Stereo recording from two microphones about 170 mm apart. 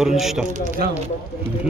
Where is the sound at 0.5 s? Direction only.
45° right (ahead or behind).